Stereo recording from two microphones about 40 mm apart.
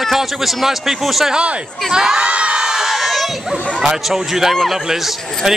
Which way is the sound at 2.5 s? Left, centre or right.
Centre.